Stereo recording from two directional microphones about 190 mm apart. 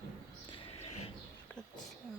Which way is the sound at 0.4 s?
30° left (ahead or behind).